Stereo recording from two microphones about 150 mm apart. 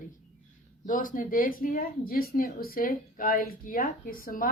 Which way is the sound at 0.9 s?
65° left (ahead or behind).